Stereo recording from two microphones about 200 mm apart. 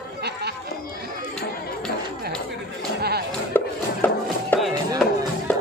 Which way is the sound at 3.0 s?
55° right (ahead or behind).